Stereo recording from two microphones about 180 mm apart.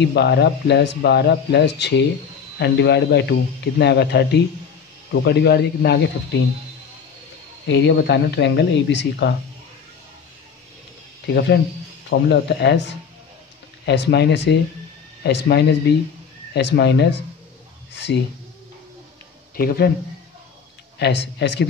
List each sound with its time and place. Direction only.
0.0 s speech: 70° left (ahead or behind)
7.6 s speech: 75° left (ahead or behind)
11.3 s speech: 70° left (ahead or behind)
19.5 s speech: 60° left (ahead or behind)
21.0 s speech: 70° left (ahead or behind)